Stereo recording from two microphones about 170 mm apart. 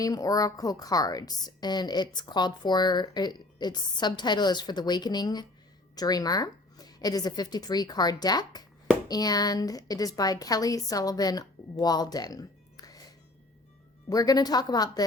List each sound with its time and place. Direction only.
0.0 s a woman's voice: 20° left (ahead or behind)
14.1 s a woman's voice: 20° left (ahead or behind)